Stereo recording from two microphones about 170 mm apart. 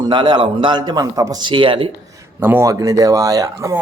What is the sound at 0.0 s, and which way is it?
Speech, 25° right (ahead or behind).